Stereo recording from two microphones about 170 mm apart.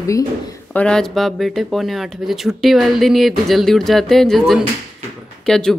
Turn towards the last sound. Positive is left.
turn(degrees=5)  # may be behind; listen again after turning